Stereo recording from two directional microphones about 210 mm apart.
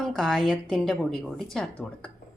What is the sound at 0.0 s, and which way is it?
A woman's voice, centre (ahead or behind).